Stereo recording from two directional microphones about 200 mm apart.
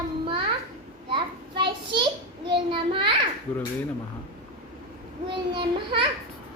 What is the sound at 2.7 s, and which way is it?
Speech, 25° right (ahead or behind).